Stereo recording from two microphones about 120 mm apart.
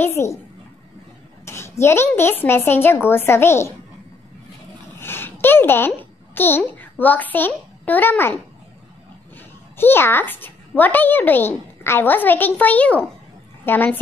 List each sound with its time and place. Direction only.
0.0 s a woman's voice: 20° left (ahead or behind)
1.4 s a woman's voice: 20° left (ahead or behind)
4.9 s a child's voice: 20° left (ahead or behind)
9.8 s a child's voice: 20° left (ahead or behind)